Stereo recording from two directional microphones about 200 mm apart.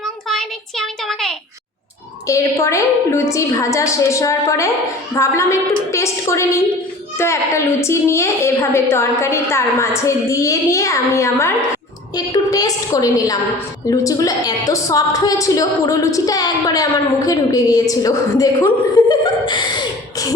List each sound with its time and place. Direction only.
0.3 s child singing: centre (ahead or behind)
2.2 s a woman's voice: 15° left (ahead or behind)